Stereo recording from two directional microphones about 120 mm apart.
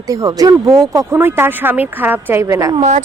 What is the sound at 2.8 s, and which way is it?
Speech, 75° right (ahead or behind).